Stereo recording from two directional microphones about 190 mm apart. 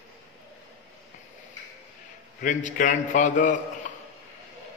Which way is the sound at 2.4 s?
40° left (ahead or behind).